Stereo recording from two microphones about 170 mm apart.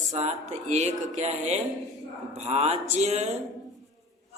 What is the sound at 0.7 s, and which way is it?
Speech, 40° right (ahead or behind).